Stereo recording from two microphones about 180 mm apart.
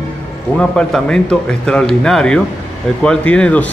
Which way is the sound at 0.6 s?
5° left (ahead or behind).